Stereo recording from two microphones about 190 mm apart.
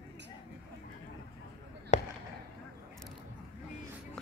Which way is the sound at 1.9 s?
40° left (ahead or behind).